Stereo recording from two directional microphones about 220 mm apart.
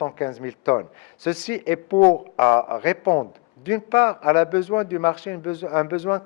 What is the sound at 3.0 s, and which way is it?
Speech, 25° left (ahead or behind).